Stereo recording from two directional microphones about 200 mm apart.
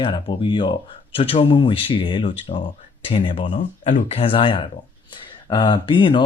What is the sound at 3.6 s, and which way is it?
Speech, 40° left (ahead or behind).